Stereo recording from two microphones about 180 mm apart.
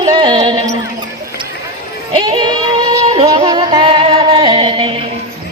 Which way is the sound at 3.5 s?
25° right (ahead or behind).